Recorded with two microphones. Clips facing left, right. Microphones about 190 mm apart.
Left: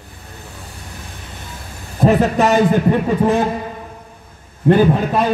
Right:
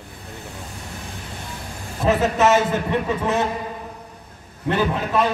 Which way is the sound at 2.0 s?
35° left (ahead or behind).